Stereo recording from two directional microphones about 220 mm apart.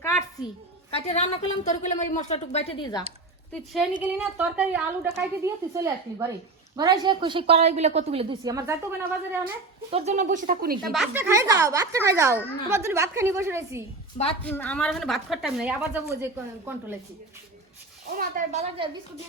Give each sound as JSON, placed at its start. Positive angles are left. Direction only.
{"t": 0.0, "sound": "a sound", "side_deg": 15}
{"t": 0.9, "sound": "a woman's voice", "side_deg": 30}
{"t": 3.5, "sound": "a woman's voice", "side_deg": 0}
{"t": 9.9, "sound": "speech", "side_deg": -30}
{"t": 10.9, "sound": "a woman's voice", "side_deg": 0}
{"t": 11.2, "sound": "a woman's voice", "side_deg": -15}
{"t": 14.4, "sound": "a woman's voice", "side_deg": 5}
{"t": 18.1, "sound": "speech", "side_deg": -40}